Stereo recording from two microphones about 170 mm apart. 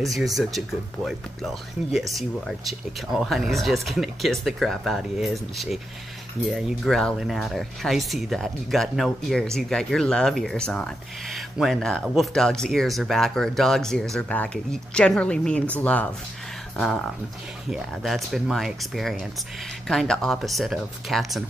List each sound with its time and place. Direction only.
0.0 s speech: centre (ahead or behind)